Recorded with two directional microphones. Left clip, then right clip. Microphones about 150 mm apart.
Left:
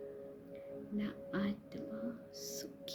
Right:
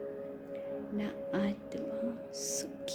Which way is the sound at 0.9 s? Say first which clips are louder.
Right 4 dB; 15° left (ahead or behind).